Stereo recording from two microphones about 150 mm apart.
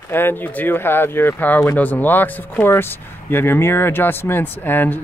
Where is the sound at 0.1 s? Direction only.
15° left (ahead or behind).